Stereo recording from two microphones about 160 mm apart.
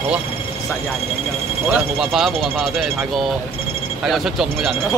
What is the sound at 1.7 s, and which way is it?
Speech, centre (ahead or behind).